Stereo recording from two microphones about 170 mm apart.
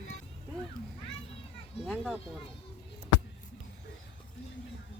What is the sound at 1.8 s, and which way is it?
Speech, centre (ahead or behind).